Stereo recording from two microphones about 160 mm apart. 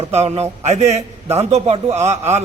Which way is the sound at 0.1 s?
40° right (ahead or behind).